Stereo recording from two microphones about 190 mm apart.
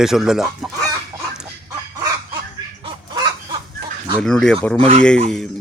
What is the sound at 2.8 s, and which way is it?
Bird, 25° right (ahead or behind).